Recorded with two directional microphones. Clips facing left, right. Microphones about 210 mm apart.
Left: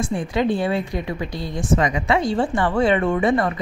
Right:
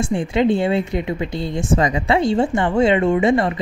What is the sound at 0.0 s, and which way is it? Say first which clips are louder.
Speech: right 4 dB; 25° right (ahead or behind).